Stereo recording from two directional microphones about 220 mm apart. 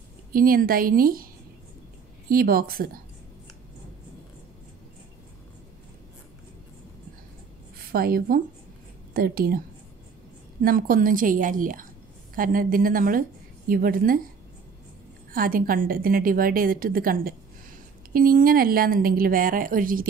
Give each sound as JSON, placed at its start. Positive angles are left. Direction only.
{"t": 0.3, "sound": "a woman's voice", "side_deg": -40}
{"t": 7.9, "sound": "a woman's voice", "side_deg": -40}
{"t": 10.6, "sound": "a woman's voice", "side_deg": -40}
{"t": 15.3, "sound": "a woman's voice", "side_deg": -40}